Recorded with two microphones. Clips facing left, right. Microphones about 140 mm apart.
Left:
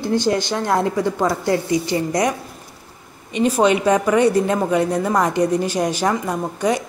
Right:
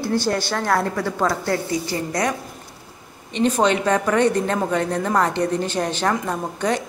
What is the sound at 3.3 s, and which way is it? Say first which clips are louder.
A woman's voice: left 2 dB; 10° left (ahead or behind).